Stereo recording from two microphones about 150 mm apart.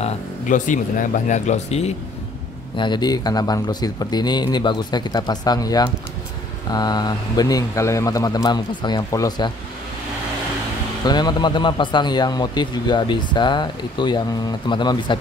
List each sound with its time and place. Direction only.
0.0 s speech: 60° left (ahead or behind)
2.8 s a man's voice: 30° left (ahead or behind)
11.1 s a man's voice: 30° left (ahead or behind)